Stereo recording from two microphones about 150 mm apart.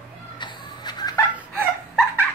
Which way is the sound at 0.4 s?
30° left (ahead or behind).